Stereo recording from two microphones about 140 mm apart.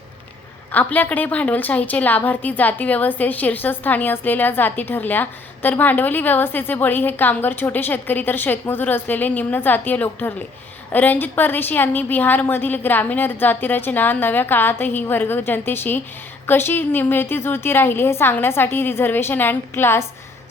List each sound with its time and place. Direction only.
0.7 s a woman's voice: 10° left (ahead or behind)